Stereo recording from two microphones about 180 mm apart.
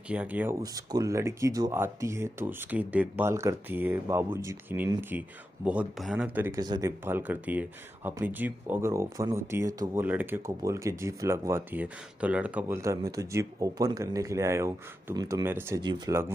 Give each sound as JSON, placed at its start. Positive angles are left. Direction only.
{"t": 0.1, "sound": "speech", "side_deg": -10}
{"t": 0.6, "sound": "speech", "side_deg": -20}
{"t": 6.6, "sound": "speech", "side_deg": -20}
{"t": 7.1, "sound": "speech", "side_deg": -10}